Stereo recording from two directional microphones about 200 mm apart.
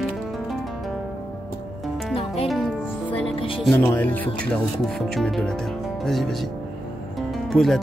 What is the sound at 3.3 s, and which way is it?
Music, 25° left (ahead or behind).